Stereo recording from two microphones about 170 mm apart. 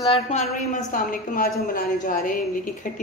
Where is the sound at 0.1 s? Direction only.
40° left (ahead or behind).